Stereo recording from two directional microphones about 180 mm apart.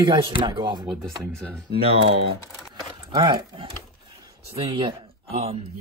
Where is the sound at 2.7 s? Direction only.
25° right (ahead or behind).